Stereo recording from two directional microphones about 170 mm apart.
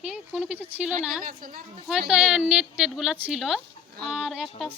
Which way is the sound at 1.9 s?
5° right (ahead or behind).